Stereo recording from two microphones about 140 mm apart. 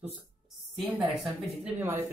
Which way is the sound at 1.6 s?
15° right (ahead or behind).